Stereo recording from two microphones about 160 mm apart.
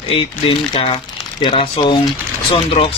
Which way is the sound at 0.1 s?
35° left (ahead or behind).